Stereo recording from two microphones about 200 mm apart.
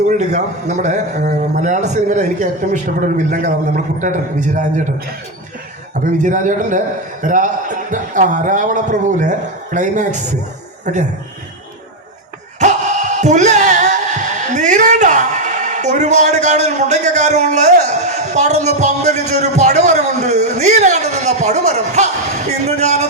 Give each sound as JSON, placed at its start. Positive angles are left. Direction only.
{"t": 0.1, "sound": "a man's voice", "side_deg": -35}
{"t": 6.1, "sound": "a man's voice", "side_deg": -40}
{"t": 12.5, "sound": "speech", "side_deg": -35}